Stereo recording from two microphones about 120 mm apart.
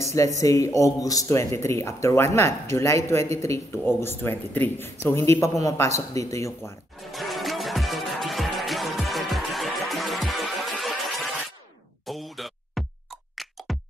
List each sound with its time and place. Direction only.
0.0 s speech: 25° left (ahead or behind)
6.6 s music: centre (ahead or behind)